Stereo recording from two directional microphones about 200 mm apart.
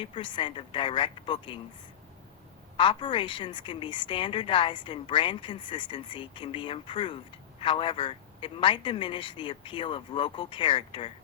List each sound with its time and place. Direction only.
0.0 s a woman's voice: 25° left (ahead or behind)
2.7 s a woman's voice: 25° left (ahead or behind)